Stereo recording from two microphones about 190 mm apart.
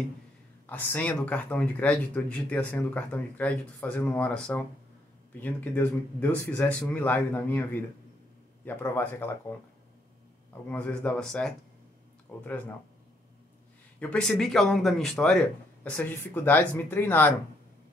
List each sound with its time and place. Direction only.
0.7 s speech: 10° left (ahead or behind)
10.7 s speech: 5° left (ahead or behind)
13.9 s speech: 5° left (ahead or behind)